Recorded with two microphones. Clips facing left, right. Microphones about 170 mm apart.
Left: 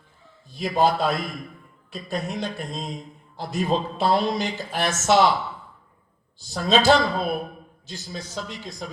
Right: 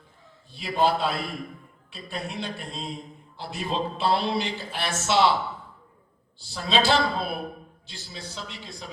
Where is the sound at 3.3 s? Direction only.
40° left (ahead or behind).